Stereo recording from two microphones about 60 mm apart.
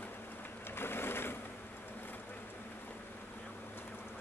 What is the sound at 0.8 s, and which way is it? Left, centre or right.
Boat, left.